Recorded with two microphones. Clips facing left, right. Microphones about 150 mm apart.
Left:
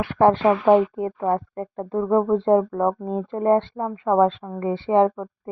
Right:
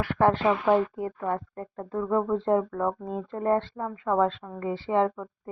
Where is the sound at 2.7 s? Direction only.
25° left (ahead or behind).